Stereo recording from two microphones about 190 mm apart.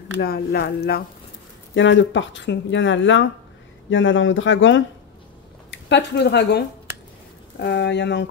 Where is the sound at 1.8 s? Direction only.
75° left (ahead or behind).